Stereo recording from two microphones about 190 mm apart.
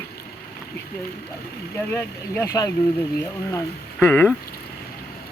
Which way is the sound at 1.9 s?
15° left (ahead or behind).